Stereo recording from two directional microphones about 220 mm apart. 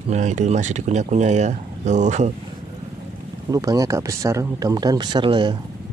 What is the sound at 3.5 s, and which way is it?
Speech, 15° right (ahead or behind).